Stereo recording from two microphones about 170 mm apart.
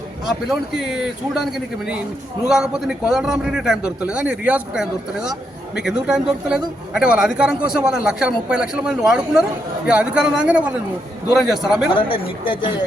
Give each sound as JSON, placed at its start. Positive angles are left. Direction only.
{"t": 0.4, "sound": "a man's voice", "side_deg": 0}
{"t": 2.5, "sound": "a man's voice", "side_deg": -5}
{"t": 11.9, "sound": "a woman's voice", "side_deg": 30}